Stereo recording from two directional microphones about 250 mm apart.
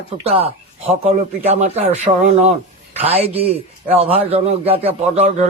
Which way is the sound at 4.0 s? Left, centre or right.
Right.